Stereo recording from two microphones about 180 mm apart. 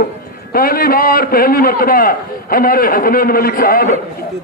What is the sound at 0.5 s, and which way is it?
A man's voice, 55° left (ahead or behind).